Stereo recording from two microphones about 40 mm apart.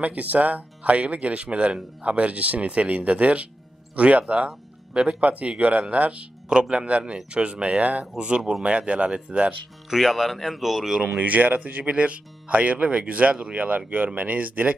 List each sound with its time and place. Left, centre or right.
0.0 s speech: right
8.2 s speech: right
9.8 s speech: centre
11.1 s speech: right